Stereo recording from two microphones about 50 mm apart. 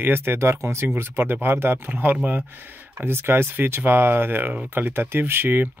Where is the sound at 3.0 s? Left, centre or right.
Right.